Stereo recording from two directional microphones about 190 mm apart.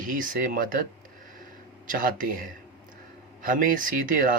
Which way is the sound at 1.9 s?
45° right (ahead or behind).